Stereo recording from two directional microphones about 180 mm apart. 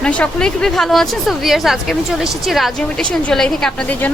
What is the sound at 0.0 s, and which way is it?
Speech, 5° left (ahead or behind).